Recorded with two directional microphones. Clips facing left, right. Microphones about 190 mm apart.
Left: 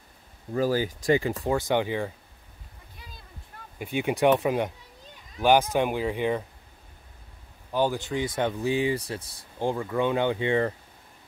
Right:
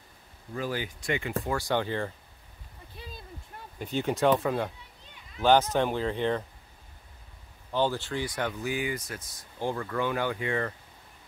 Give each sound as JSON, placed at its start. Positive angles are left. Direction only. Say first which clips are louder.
{"t": 0.5, "sound": "speech", "louder": "left 8 dB", "side_deg": 35}
{"t": 1.5, "sound": "speech", "louder": "left 4 dB", "side_deg": 20}
{"t": 3.0, "sound": "a sound", "louder": "right 6 dB", "side_deg": -30}
{"t": 3.7, "sound": "speech", "louder": "left 2 dB", "side_deg": 10}
{"t": 7.7, "sound": "speech", "louder": "left 2 dB", "side_deg": 15}
{"t": 9.6, "sound": "speech", "louder": "left 4 dB", "side_deg": 15}